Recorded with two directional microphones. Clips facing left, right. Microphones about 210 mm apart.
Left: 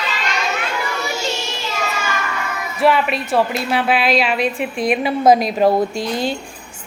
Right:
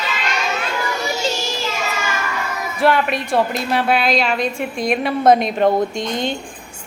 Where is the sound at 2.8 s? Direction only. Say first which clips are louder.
Left 1 dB; centre (ahead or behind).